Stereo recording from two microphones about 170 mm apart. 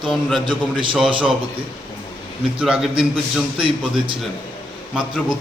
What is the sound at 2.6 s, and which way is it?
Speech, 5° right (ahead or behind).